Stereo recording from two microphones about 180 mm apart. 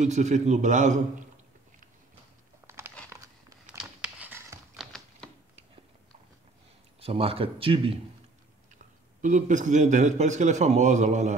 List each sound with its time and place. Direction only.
0.0 s a man's voice: 40° right (ahead or behind)
2.6 s crumpling: 15° right (ahead or behind)
3.6 s a sound: 5° right (ahead or behind)
7.0 s a man's voice: 30° right (ahead or behind)
9.2 s a man's voice: 45° right (ahead or behind)